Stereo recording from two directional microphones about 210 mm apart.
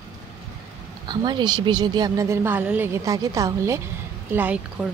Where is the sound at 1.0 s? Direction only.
20° right (ahead or behind).